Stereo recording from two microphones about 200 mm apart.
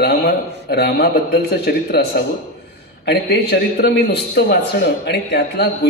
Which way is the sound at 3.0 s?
55° left (ahead or behind).